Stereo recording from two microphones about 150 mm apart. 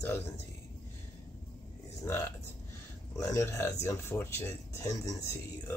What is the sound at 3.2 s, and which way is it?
Speech, 20° left (ahead or behind).